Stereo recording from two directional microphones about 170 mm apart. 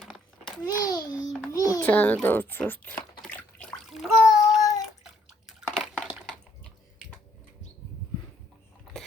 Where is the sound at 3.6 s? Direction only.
5° left (ahead or behind).